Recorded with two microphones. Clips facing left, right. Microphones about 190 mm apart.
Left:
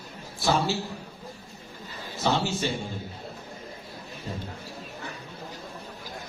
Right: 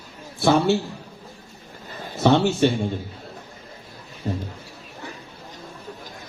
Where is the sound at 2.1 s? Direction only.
60° right (ahead or behind).